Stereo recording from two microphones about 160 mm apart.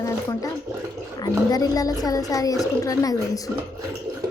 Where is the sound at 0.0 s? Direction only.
20° left (ahead or behind).